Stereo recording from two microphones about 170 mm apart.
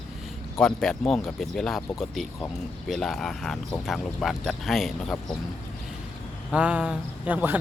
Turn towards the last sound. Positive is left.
turn(degrees=-10)  # may be behind; listen again after turning